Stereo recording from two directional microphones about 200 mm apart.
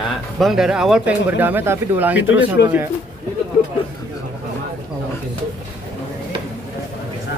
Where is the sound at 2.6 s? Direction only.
60° left (ahead or behind).